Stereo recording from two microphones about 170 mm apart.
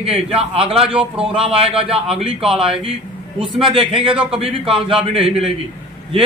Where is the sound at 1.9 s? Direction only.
Centre (ahead or behind).